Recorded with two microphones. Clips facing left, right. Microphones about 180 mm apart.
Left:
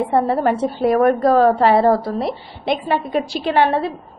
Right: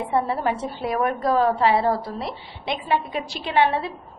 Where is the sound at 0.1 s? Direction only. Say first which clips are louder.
Left 4 dB; 45° left (ahead or behind).